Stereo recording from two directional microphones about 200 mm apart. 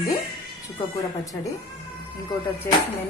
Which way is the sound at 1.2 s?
15° left (ahead or behind).